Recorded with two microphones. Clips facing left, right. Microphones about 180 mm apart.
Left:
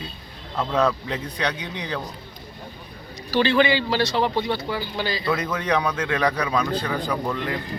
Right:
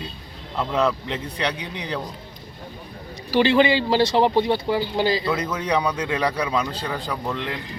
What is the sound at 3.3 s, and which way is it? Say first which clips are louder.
Speech: right 2 dB; 20° right (ahead or behind).